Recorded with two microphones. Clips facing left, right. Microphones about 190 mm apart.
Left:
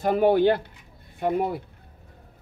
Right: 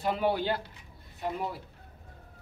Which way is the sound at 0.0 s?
50° left (ahead or behind).